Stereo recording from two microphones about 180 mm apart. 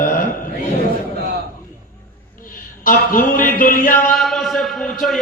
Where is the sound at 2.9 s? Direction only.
50° left (ahead or behind).